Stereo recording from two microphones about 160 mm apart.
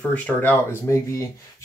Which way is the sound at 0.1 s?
10° left (ahead or behind).